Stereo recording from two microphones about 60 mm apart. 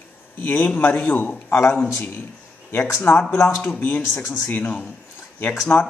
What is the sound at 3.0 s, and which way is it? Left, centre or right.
Speech, left.